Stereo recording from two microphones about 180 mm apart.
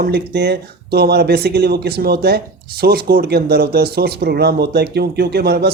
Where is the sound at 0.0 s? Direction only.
65° right (ahead or behind).